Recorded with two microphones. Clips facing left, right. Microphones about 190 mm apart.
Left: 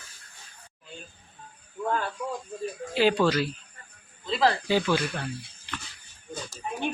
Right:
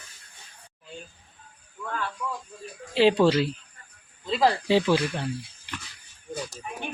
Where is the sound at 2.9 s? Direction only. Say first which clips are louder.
Right 3 dB; 25° right (ahead or behind).